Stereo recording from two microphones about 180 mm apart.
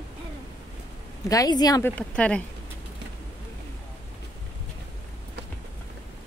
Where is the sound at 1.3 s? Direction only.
20° left (ahead or behind).